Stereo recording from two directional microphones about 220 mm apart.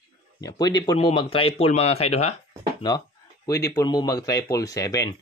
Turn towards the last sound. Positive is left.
turn(degrees=15)  # may be behind; listen again after turning